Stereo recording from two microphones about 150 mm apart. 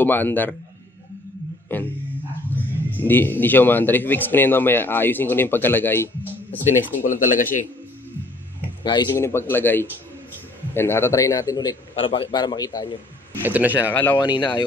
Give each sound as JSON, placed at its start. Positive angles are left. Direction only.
{"t": 0.0, "sound": "speech", "side_deg": 15}
{"t": 1.7, "sound": "dog", "side_deg": 10}
{"t": 2.5, "sound": "speech", "side_deg": 10}
{"t": 7.0, "sound": "speech", "side_deg": 65}
{"t": 8.8, "sound": "a man's voice", "side_deg": 30}
{"t": 9.1, "sound": "a man's voice", "side_deg": 15}
{"t": 11.9, "sound": "a man's voice", "side_deg": 40}
{"t": 13.4, "sound": "speech", "side_deg": -10}
{"t": 14.1, "sound": "a man's voice", "side_deg": 30}